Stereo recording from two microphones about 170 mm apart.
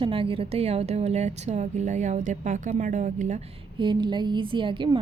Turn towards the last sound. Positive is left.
turn(degrees=-30)  # may be behind; listen again after turning